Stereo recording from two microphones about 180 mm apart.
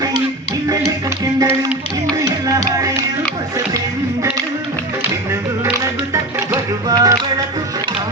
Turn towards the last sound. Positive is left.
turn(degrees=-20)  # may be behind; listen again after turning